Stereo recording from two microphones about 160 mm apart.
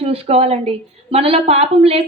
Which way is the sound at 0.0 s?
40° right (ahead or behind).